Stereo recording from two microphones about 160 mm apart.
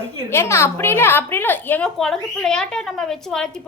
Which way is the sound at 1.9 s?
Centre (ahead or behind).